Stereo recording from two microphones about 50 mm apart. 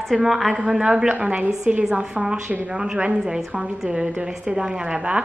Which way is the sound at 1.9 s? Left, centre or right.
Centre.